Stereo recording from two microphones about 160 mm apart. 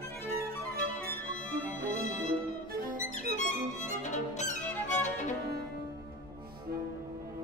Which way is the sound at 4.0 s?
50° left (ahead or behind).